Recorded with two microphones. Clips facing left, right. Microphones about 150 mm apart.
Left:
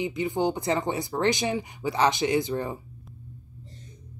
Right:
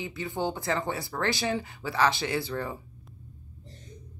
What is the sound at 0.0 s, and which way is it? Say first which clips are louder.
A woman's voice: left 5 dB; 15° left (ahead or behind).